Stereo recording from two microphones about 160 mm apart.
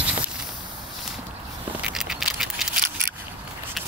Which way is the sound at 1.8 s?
5° right (ahead or behind).